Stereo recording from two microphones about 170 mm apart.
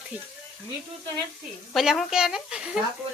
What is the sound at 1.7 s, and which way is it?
Speech, centre (ahead or behind).